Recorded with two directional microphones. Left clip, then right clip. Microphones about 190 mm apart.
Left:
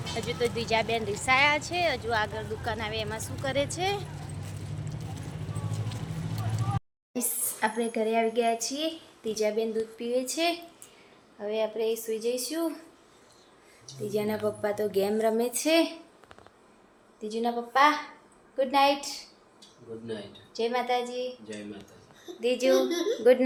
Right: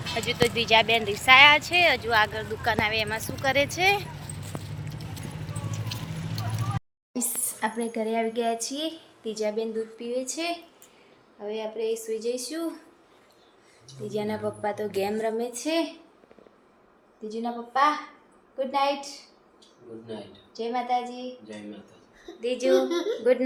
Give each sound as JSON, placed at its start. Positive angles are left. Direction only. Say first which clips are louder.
{"t": 0.2, "sound": "speech", "louder": "right 5 dB", "side_deg": -10}
{"t": 5.9, "sound": "clip-clop", "louder": "right 5 dB", "side_deg": 10}
{"t": 7.1, "sound": "speech", "louder": "right 1 dB", "side_deg": 5}
{"t": 14.1, "sound": "speech", "louder": "left 1 dB", "side_deg": 15}
{"t": 15.5, "sound": "a woman's voice", "louder": "left 3 dB", "side_deg": 40}
{"t": 17.2, "sound": "a woman's voice", "louder": "left 3 dB", "side_deg": 45}
{"t": 20.5, "sound": "a woman's voice", "louder": "even", "side_deg": 45}
{"t": 22.4, "sound": "speech", "louder": "right 1 dB", "side_deg": 30}